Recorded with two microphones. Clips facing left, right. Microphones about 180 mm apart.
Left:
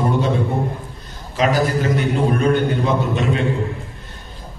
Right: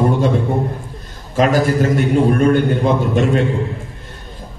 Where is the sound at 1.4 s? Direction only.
45° right (ahead or behind).